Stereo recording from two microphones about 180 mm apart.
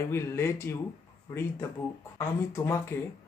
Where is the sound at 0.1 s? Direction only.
15° left (ahead or behind).